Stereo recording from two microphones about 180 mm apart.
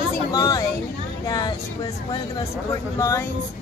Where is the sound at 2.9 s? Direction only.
15° left (ahead or behind).